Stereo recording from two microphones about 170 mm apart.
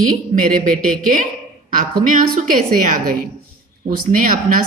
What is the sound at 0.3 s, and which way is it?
A woman's voice, 50° right (ahead or behind).